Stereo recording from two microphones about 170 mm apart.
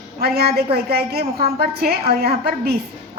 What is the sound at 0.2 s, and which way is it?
A woman's voice, 70° right (ahead or behind).